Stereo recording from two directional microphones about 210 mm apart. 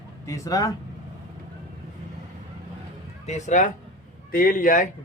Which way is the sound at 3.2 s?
35° left (ahead or behind).